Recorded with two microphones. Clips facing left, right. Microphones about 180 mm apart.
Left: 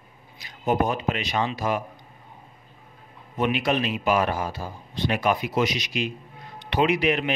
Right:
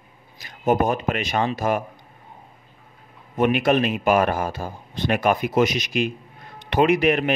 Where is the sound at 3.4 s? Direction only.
50° right (ahead or behind).